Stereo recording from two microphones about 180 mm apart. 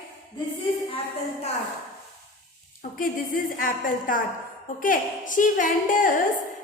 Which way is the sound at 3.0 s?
50° left (ahead or behind).